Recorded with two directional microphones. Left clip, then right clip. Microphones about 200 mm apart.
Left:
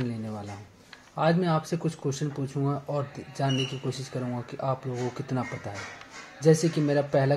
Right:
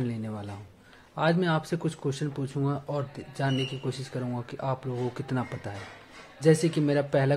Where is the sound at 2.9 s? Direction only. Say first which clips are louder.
Left 2 dB; 20° right (ahead or behind).